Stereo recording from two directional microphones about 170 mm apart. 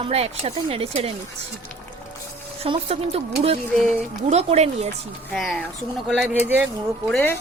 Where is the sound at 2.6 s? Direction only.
35° right (ahead or behind).